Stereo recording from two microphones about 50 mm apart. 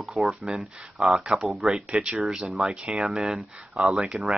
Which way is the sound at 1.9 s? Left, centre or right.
Centre.